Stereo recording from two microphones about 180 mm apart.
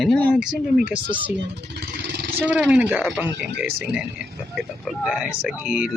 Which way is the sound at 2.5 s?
5° right (ahead or behind).